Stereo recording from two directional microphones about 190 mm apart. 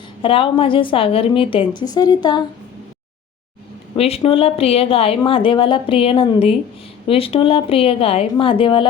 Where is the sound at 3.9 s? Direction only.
30° left (ahead or behind).